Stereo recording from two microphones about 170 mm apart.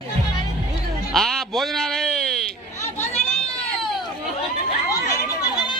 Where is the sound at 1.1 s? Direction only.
Centre (ahead or behind).